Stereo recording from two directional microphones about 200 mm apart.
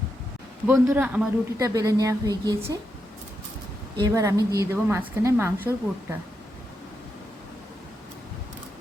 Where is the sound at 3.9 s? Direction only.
15° right (ahead or behind).